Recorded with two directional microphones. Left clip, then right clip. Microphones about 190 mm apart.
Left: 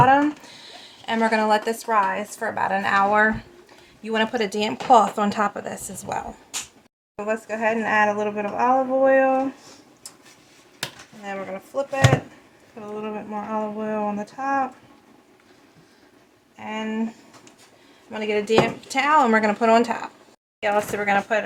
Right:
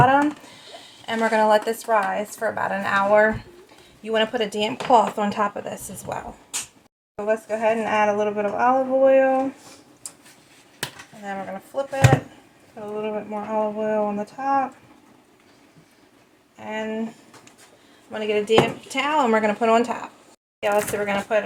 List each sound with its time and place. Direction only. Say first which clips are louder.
0.0 s a sound: left 1 dB; 25° left (ahead or behind)
1.0 s speech: right 1 dB; 25° left (ahead or behind)
7.3 s speech: right 2 dB; 20° left (ahead or behind)
11.7 s speech: left 1 dB; 25° left (ahead or behind)
13.0 s speech: right 3 dB; 25° left (ahead or behind)
16.6 s speech: right 1 dB; 20° left (ahead or behind)
18.1 s speech: right 1 dB; 25° left (ahead or behind)